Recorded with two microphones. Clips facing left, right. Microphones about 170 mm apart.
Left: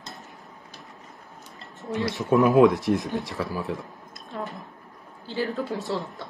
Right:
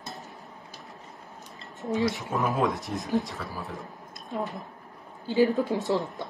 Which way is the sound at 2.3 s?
70° left (ahead or behind).